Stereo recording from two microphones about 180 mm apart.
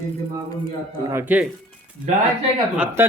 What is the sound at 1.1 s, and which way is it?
Speech, 10° right (ahead or behind).